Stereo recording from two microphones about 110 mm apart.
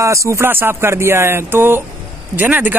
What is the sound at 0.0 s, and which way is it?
Speech, 25° right (ahead or behind).